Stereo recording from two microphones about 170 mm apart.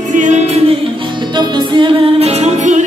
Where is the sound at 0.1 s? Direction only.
45° right (ahead or behind).